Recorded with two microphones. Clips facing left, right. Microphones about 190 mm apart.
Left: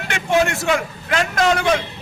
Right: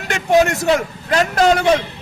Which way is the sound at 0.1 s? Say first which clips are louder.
Right 4 dB; 40° right (ahead or behind).